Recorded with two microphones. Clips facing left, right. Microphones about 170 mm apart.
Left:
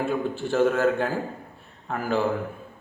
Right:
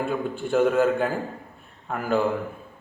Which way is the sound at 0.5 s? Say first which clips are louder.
Right 1 dB; 5° right (ahead or behind).